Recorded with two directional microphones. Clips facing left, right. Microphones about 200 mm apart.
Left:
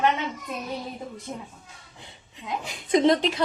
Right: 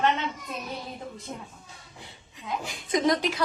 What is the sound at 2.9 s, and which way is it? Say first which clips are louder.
Speech: left 4 dB; 25° left (ahead or behind).